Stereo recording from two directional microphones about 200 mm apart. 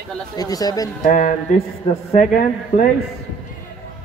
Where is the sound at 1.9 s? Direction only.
25° left (ahead or behind).